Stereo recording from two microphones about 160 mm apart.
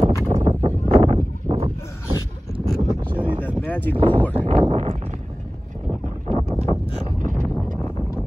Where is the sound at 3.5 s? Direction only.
10° left (ahead or behind).